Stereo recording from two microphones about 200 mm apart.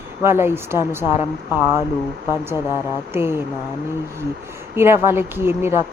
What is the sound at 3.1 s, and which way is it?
Speech, 10° right (ahead or behind).